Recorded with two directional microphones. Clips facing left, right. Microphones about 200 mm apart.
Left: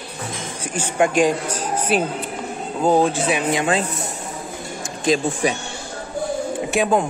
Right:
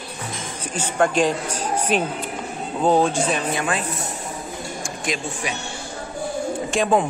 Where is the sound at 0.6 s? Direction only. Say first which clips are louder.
Left 1 dB; 10° left (ahead or behind).